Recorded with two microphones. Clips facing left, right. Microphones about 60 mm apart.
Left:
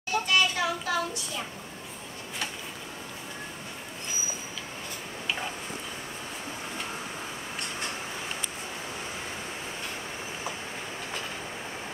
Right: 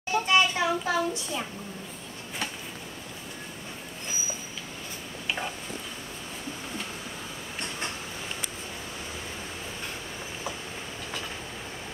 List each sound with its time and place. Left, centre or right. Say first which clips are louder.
0.1 s child singing: right 2 dB; right